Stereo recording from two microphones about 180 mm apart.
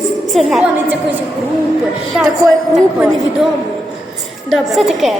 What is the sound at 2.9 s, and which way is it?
Speech, 5° right (ahead or behind).